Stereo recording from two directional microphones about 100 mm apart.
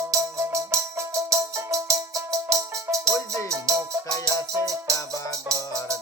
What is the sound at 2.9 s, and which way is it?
Music, 30° right (ahead or behind).